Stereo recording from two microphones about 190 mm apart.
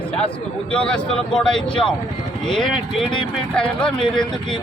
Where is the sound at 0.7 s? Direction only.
5° left (ahead or behind).